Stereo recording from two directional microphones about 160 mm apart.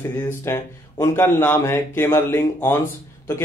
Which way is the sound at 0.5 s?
15° left (ahead or behind).